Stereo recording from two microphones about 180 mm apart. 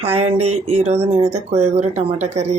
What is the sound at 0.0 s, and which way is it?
Speech, 35° right (ahead or behind).